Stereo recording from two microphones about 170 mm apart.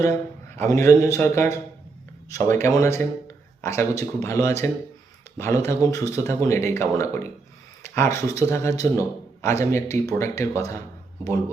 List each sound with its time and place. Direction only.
0.5 s speech: 15° left (ahead or behind)